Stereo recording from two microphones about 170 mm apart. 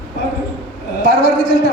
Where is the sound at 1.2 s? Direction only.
60° right (ahead or behind).